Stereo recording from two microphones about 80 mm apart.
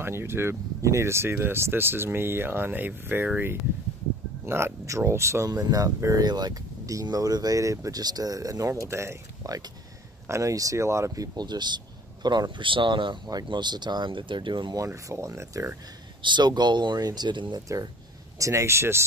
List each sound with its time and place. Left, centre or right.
0.0 s speech: right
4.5 s speech: right
5.5 s speech: right
11.3 s speech: right
13.5 s speech: right
15.0 s speech: right
16.2 s speech: right
17.0 s speech: right
18.4 s speech: right